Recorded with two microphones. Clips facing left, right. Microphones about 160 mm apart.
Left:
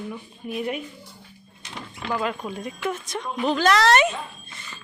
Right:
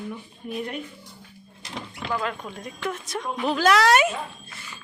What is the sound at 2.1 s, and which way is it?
Speech, 10° left (ahead or behind).